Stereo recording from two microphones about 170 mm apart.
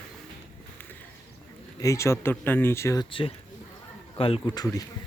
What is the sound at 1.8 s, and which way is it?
Speech, 20° left (ahead or behind).